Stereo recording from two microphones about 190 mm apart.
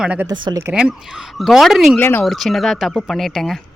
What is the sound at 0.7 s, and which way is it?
Speech, 5° right (ahead or behind).